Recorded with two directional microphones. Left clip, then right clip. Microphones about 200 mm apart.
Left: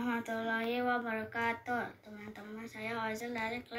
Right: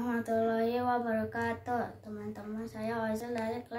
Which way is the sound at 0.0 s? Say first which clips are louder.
Right 5 dB; 20° right (ahead or behind).